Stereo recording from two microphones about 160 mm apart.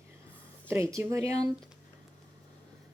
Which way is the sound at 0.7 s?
15° right (ahead or behind).